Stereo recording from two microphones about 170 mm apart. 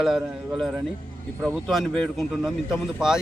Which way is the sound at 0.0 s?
Centre (ahead or behind).